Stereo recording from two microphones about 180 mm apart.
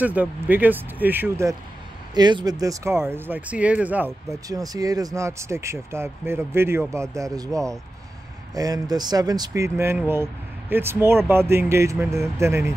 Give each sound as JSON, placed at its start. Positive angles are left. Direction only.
{"t": 0.0, "sound": "speech", "side_deg": -10}
{"t": 4.5, "sound": "speech", "side_deg": -20}